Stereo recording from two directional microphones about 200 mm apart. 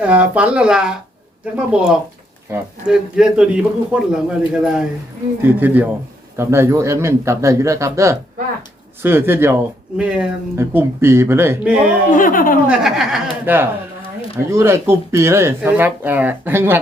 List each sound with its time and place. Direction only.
0.0 s speech: 5° right (ahead or behind)
12.1 s speech: 40° left (ahead or behind)
12.6 s speech: centre (ahead or behind)